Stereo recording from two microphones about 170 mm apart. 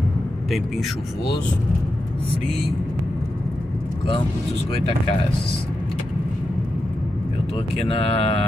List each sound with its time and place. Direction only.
8.0 s mantra: 35° left (ahead or behind)